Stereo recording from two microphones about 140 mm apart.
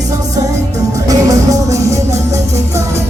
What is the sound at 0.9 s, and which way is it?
Music, 25° right (ahead or behind).